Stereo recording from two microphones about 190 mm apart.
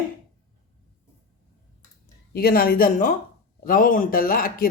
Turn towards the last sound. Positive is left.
turn(degrees=50)  # may be behind; listen again after turning